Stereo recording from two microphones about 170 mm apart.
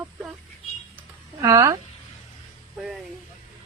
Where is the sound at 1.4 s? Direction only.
20° right (ahead or behind).